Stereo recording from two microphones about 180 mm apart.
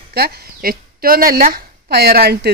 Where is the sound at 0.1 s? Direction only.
55° right (ahead or behind).